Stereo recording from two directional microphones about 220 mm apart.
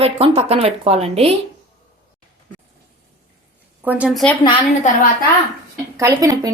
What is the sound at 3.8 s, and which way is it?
Speech, 5° right (ahead or behind).